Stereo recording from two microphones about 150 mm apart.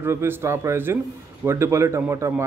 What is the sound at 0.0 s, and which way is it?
A man's voice, 15° right (ahead or behind).